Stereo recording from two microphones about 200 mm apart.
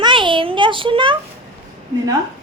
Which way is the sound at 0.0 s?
25° right (ahead or behind).